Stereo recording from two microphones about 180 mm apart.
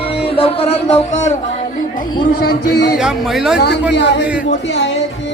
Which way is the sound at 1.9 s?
60° left (ahead or behind).